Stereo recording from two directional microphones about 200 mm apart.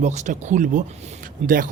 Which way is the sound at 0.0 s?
35° right (ahead or behind).